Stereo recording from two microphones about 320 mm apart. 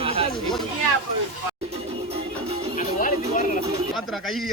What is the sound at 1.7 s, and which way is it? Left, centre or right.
Music, centre.